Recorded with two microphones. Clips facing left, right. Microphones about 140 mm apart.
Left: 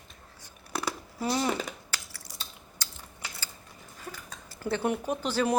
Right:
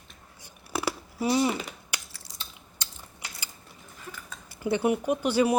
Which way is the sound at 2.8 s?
20° right (ahead or behind).